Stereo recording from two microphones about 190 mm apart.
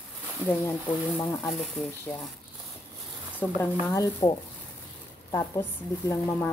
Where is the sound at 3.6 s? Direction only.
20° left (ahead or behind).